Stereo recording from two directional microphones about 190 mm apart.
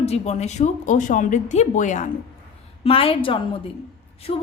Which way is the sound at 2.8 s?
30° left (ahead or behind).